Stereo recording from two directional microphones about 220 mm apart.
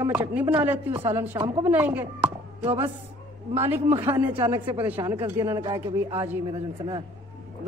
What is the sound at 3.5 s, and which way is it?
Speech, 10° right (ahead or behind).